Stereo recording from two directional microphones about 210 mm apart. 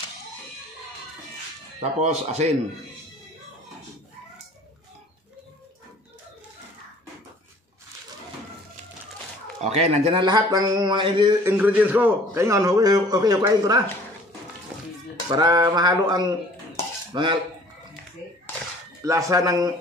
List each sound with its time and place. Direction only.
1.8 s speech: 30° right (ahead or behind)
9.6 s speech: 35° right (ahead or behind)
11.5 s a man's voice: 10° right (ahead or behind)
15.2 s speech: 20° right (ahead or behind)
19.0 s a man's voice: 15° right (ahead or behind)